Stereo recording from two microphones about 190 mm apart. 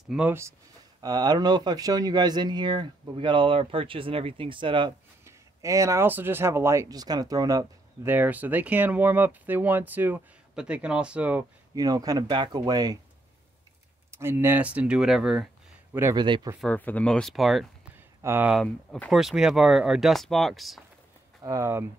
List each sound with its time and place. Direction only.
0.1 s speech: 10° right (ahead or behind)
11.7 s speech: 20° right (ahead or behind)
14.1 s speech: 10° right (ahead or behind)
15.9 s speech: 15° right (ahead or behind)
16.3 s speech: 25° right (ahead or behind)
16.6 s speech: 10° left (ahead or behind)
18.2 s speech: 10° right (ahead or behind)
18.6 s speech: 5° left (ahead or behind)
21.4 s speech: 15° right (ahead or behind)